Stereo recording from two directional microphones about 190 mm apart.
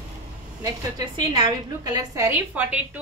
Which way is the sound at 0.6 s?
20° right (ahead or behind).